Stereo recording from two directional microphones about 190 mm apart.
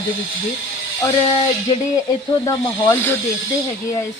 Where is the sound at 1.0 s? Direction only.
20° left (ahead or behind).